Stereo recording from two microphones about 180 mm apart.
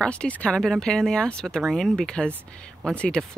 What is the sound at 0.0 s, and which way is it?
Speech, 5° left (ahead or behind).